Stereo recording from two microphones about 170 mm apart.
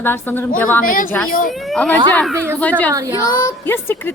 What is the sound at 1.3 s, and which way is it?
Speech, 55° left (ahead or behind).